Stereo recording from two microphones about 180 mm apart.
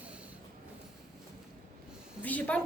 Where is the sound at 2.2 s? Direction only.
10° left (ahead or behind).